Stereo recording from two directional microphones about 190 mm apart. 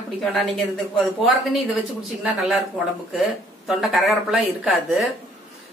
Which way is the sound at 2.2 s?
Centre (ahead or behind).